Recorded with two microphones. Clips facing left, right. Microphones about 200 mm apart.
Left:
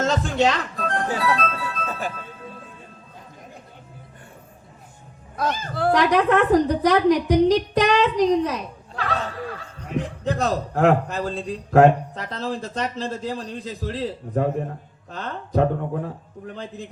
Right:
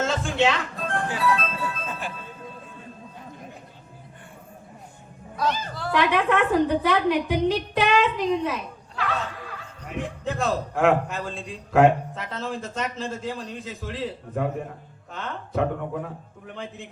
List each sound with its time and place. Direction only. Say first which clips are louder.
0.0 s speech: left 2 dB; 40° left (ahead or behind)
1.9 s music: left 4 dB; 40° left (ahead or behind)
5.4 s a woman's voice: left 3 dB; 50° left (ahead or behind)